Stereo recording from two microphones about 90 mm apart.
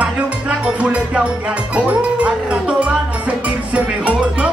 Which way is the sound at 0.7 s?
15° right (ahead or behind).